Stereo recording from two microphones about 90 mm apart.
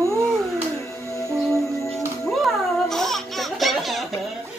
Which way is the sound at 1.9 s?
5° left (ahead or behind).